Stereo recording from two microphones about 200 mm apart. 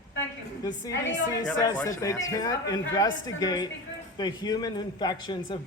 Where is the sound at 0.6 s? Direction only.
20° left (ahead or behind).